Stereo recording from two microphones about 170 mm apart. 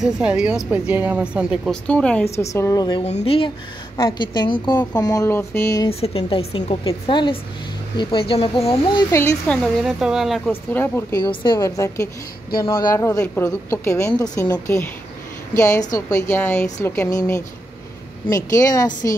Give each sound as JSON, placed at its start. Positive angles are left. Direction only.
{"t": 0.0, "sound": "a woman's voice", "side_deg": -5}
{"t": 1.9, "sound": "a woman's voice", "side_deg": 5}
{"t": 2.3, "sound": "a woman's voice", "side_deg": 15}
{"t": 3.0, "sound": "a woman's voice", "side_deg": 40}
{"t": 5.9, "sound": "speech", "side_deg": 35}
{"t": 9.1, "sound": "a woman's voice", "side_deg": 15}
{"t": 9.6, "sound": "a woman's voice", "side_deg": 0}
{"t": 10.5, "sound": "a woman's voice", "side_deg": 15}